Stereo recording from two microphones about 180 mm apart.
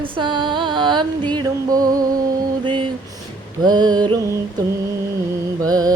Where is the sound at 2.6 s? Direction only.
25° right (ahead or behind).